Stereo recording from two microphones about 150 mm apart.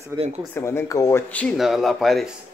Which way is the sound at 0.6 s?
20° left (ahead or behind).